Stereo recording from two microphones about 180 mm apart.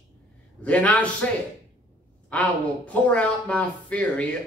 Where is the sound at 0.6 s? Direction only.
10° left (ahead or behind).